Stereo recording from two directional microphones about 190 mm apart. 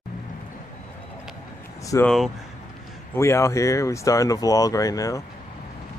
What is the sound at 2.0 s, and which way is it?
Speech, centre (ahead or behind).